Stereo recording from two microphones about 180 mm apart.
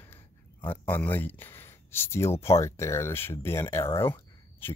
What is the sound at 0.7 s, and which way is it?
Speech, 10° left (ahead or behind).